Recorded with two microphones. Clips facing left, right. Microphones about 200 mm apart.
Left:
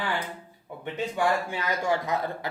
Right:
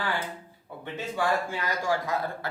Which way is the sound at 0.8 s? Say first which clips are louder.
Left 3 dB; 15° left (ahead or behind).